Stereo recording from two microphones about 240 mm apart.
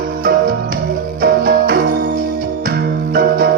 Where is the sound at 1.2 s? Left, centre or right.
Right.